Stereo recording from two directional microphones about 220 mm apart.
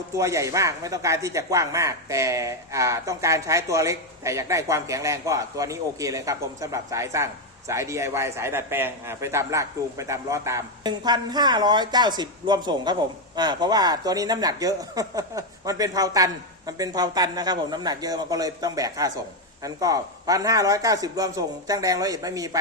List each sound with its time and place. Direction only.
0.1 s a man's voice: 15° right (ahead or behind)